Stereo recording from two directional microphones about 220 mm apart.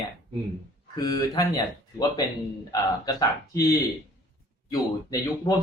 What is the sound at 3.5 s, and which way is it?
Speech, 15° left (ahead or behind).